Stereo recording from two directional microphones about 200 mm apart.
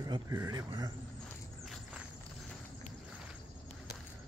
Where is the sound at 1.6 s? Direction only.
Centre (ahead or behind).